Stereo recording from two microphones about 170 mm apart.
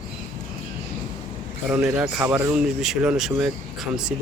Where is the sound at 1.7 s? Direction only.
5° right (ahead or behind).